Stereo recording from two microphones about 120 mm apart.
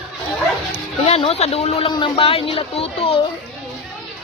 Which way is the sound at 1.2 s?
60° left (ahead or behind).